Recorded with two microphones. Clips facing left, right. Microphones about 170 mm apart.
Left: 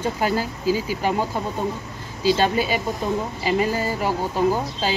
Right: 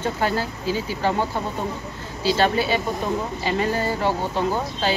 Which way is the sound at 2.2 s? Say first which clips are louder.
Left 1 dB; 15° left (ahead or behind).